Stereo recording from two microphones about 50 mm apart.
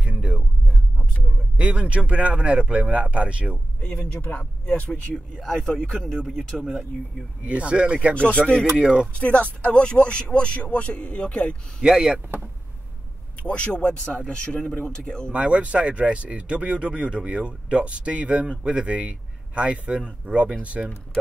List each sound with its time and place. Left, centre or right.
0.0 s a sound: right
1.6 s speech: right
3.8 s speech: left
5.1 s speech: centre
7.4 s speech: right
8.1 s speech: left
8.5 s speech: centre
9.2 s speech: left
11.8 s speech: centre
13.4 s speech: left
15.3 s speech: right